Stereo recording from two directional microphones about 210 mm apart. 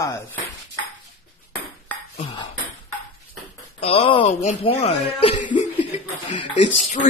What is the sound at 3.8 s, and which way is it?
Speech, 30° left (ahead or behind).